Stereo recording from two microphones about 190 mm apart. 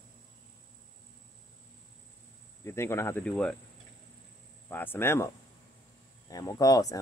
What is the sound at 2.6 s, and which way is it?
Speech, 15° left (ahead or behind).